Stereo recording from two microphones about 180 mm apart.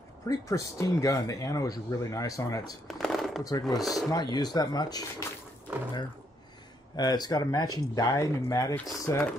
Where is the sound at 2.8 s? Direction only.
Centre (ahead or behind).